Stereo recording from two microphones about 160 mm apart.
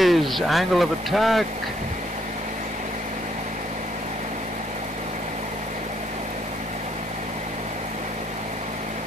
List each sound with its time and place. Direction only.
0.0 s speech: centre (ahead or behind)